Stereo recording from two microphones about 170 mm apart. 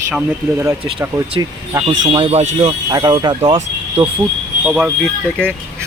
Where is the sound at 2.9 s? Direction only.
25° right (ahead or behind).